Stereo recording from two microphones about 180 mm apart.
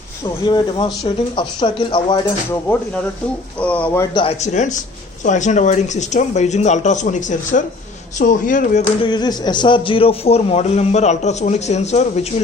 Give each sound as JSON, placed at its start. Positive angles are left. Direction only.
{"t": 0.4, "sound": "speech", "side_deg": 25}
{"t": 2.7, "sound": "speech", "side_deg": 10}
{"t": 4.1, "sound": "a man's voice", "side_deg": 30}
{"t": 9.0, "sound": "a man's voice", "side_deg": 25}